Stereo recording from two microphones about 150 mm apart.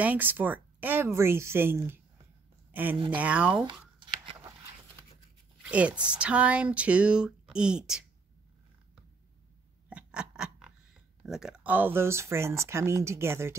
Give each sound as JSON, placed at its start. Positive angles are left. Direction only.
{"t": 0.0, "sound": "speech", "side_deg": -10}
{"t": 5.6, "sound": "speech", "side_deg": -10}
{"t": 9.8, "sound": "a sound", "side_deg": -10}
{"t": 11.2, "sound": "speech", "side_deg": -5}